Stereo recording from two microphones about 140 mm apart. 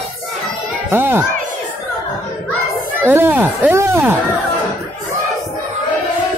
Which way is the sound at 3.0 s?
15° right (ahead or behind).